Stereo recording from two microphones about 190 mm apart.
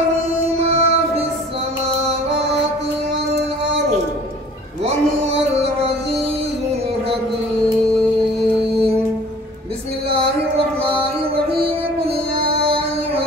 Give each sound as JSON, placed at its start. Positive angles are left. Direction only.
{"t": 0.6, "sound": "music", "side_deg": -30}
{"t": 4.8, "sound": "music", "side_deg": -35}
{"t": 12.6, "sound": "music", "side_deg": -30}